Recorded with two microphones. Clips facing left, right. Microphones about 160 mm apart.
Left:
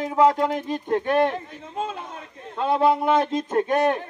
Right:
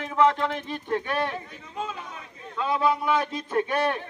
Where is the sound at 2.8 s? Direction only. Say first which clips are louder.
Left 5 dB; 55° left (ahead or behind).